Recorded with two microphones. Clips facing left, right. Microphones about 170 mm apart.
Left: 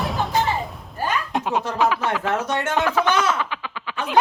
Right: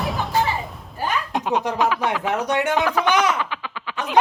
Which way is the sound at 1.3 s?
Centre (ahead or behind).